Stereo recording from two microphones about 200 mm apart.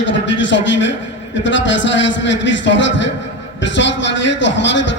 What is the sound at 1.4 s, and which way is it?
A man's voice, 65° left (ahead or behind).